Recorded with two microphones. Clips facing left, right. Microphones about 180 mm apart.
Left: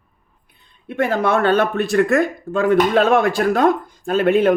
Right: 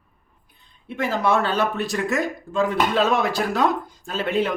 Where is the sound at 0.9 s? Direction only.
60° left (ahead or behind).